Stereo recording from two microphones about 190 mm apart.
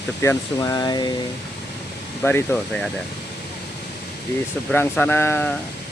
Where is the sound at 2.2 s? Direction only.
10° left (ahead or behind).